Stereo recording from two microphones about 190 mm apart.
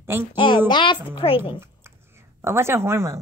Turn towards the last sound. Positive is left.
turn(degrees=-15)  # may be behind; listen again after turning